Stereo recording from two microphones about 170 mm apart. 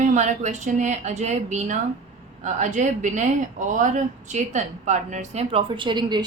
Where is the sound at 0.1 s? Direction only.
45° right (ahead or behind).